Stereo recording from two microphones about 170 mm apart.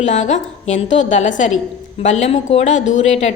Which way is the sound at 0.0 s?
45° left (ahead or behind).